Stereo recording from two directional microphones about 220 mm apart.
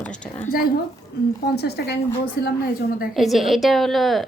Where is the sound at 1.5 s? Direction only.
50° left (ahead or behind).